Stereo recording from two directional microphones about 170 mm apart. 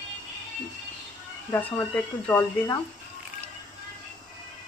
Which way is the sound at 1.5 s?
10° left (ahead or behind).